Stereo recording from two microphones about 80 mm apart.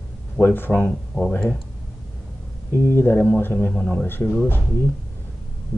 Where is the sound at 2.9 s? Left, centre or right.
Left.